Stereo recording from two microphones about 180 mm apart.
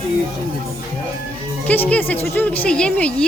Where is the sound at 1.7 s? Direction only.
10° left (ahead or behind).